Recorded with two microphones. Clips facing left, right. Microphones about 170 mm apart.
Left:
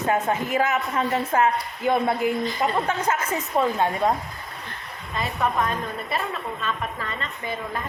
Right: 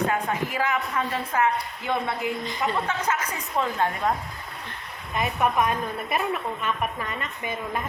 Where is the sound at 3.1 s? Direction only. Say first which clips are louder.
Left 3 dB; 25° left (ahead or behind).